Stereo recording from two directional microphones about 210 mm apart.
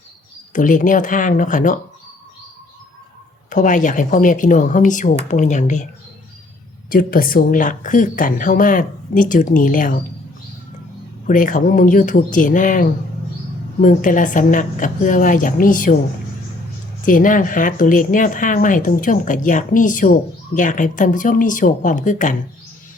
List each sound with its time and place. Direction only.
0.5 s speech: 40° left (ahead or behind)
3.5 s speech: 35° left (ahead or behind)
6.9 s speech: 45° left (ahead or behind)
11.3 s speech: 40° left (ahead or behind)
17.1 s speech: 40° left (ahead or behind)